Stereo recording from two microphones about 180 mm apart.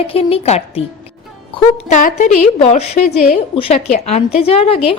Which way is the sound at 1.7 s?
45° left (ahead or behind).